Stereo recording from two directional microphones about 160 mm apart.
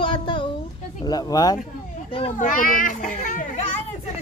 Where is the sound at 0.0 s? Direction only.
30° left (ahead or behind).